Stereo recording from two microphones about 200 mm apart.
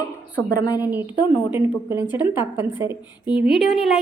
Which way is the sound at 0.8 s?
10° right (ahead or behind).